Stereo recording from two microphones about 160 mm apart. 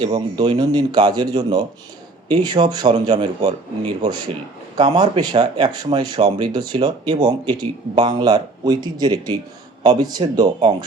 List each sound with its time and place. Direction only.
0.0 s speech: 30° right (ahead or behind)
4.8 s speech: 30° right (ahead or behind)